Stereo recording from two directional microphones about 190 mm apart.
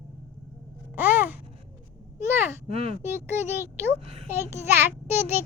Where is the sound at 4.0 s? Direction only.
30° right (ahead or behind).